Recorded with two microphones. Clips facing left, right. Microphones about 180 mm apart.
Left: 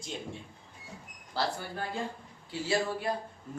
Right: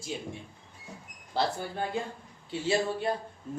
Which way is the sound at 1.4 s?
20° right (ahead or behind).